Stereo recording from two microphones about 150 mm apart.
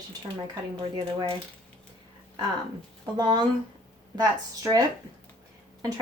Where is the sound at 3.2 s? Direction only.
30° right (ahead or behind).